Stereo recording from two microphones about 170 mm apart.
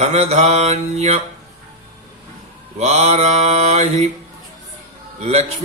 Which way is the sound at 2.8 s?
40° right (ahead or behind).